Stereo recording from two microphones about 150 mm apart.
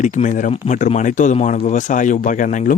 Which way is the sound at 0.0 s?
55° left (ahead or behind).